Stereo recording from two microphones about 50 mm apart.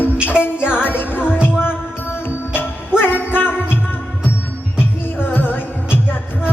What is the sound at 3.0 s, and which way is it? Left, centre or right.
Music, left.